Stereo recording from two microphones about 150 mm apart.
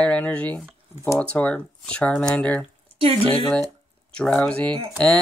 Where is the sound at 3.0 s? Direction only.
40° right (ahead or behind).